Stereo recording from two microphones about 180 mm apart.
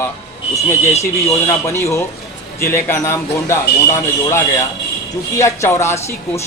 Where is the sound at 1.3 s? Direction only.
15° left (ahead or behind).